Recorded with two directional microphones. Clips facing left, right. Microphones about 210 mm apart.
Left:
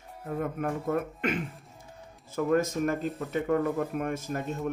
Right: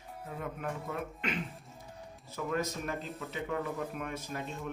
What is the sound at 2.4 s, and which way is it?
Speech, 50° left (ahead or behind).